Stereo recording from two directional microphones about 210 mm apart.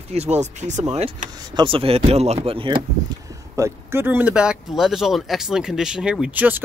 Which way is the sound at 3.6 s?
10° right (ahead or behind).